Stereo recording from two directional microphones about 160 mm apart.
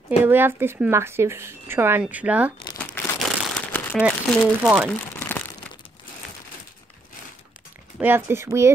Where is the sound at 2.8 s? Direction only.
5° left (ahead or behind).